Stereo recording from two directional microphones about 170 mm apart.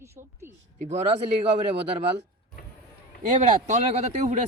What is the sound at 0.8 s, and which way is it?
Speech, 40° right (ahead or behind).